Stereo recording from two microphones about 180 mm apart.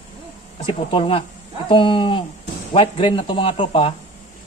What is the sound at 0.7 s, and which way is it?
A man's voice, 30° left (ahead or behind).